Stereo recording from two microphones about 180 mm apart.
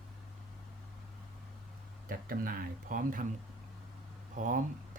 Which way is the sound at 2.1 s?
55° right (ahead or behind).